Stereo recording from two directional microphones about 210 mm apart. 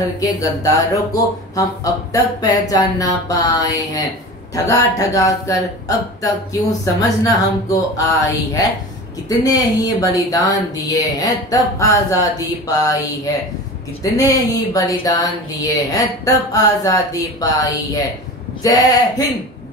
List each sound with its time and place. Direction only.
0.2 s speech: 15° left (ahead or behind)
9.3 s speech: 15° left (ahead or behind)